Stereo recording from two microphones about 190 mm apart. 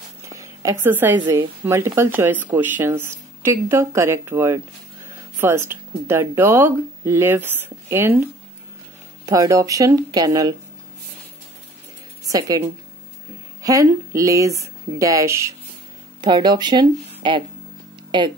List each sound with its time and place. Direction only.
0.2 s a sound: 15° right (ahead or behind)
1.2 s speech: 15° right (ahead or behind)
12.3 s speech: 20° right (ahead or behind)